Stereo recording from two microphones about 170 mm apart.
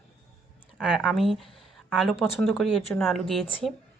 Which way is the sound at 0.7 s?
5° right (ahead or behind).